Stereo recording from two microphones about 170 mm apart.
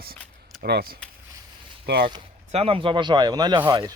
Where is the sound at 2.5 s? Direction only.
35° right (ahead or behind).